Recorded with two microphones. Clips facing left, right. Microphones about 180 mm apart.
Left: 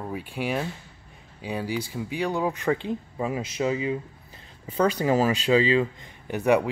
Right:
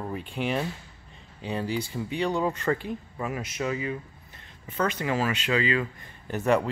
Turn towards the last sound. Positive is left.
turn(degrees=10)  # may be behind; listen again after turning